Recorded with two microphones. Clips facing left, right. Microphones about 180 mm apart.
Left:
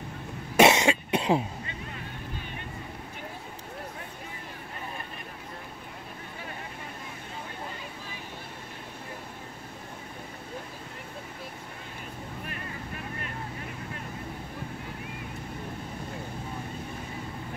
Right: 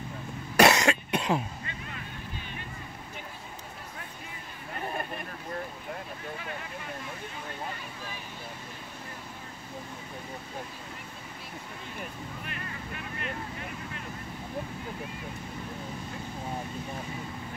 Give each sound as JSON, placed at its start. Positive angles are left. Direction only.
{"t": 0.6, "sound": "cough", "side_deg": 25}